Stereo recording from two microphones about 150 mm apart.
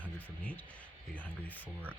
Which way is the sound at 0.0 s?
10° left (ahead or behind).